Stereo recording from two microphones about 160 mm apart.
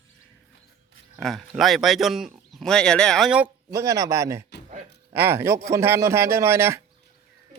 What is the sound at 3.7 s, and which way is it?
A man's voice, 20° right (ahead or behind).